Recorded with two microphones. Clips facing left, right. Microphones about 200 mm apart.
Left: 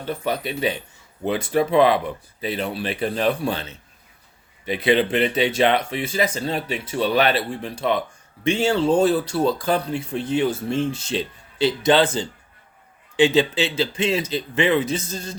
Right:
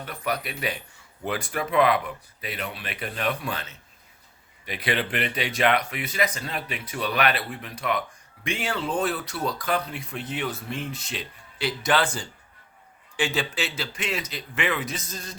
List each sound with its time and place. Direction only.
0.0 s speech: 25° left (ahead or behind)